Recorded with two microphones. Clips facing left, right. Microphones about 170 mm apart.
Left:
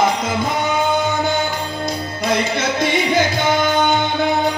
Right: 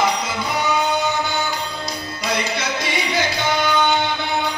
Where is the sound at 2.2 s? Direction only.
55° left (ahead or behind).